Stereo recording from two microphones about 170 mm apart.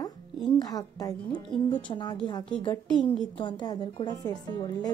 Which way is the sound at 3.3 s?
25° left (ahead or behind).